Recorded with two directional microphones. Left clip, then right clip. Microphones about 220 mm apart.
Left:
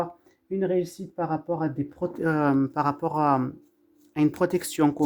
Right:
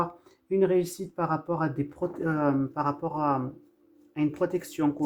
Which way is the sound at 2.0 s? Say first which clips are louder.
Left 4 dB; 35° left (ahead or behind).